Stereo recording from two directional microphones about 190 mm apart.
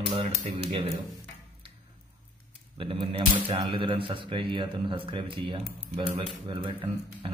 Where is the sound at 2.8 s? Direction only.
25° right (ahead or behind).